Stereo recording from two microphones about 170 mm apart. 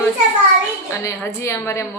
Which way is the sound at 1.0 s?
15° left (ahead or behind).